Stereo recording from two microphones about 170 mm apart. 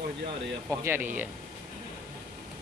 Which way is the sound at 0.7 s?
10° right (ahead or behind).